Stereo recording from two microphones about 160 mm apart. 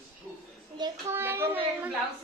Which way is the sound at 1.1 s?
15° right (ahead or behind).